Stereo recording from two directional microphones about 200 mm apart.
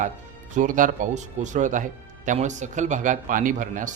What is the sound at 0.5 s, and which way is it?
A man's voice, 40° right (ahead or behind).